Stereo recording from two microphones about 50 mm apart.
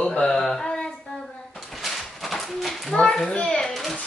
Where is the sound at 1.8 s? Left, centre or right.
Centre.